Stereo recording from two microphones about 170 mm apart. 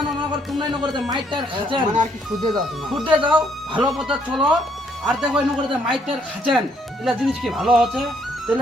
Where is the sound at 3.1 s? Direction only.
30° right (ahead or behind).